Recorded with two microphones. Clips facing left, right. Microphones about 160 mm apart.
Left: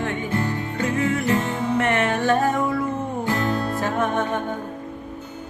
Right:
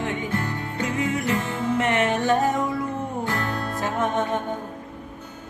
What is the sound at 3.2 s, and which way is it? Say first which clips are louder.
Music: left 6 dB; 15° left (ahead or behind).